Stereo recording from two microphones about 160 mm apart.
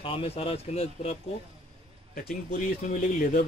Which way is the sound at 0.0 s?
35° left (ahead or behind).